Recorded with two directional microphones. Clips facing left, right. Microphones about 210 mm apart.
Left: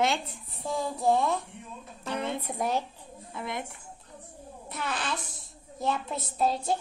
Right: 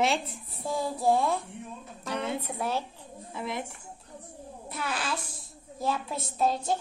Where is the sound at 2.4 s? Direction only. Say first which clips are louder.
Left 2 dB; 15° left (ahead or behind).